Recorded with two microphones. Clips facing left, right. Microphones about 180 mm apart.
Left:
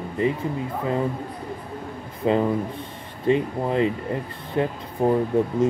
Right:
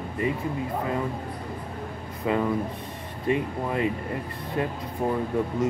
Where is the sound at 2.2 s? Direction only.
25° left (ahead or behind).